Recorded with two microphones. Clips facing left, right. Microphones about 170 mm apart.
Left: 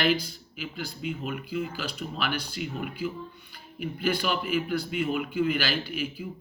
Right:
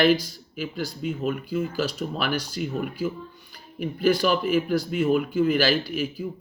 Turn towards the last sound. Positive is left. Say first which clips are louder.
# right 4 dB
turn(degrees=-40)  # may be behind; listen again after turning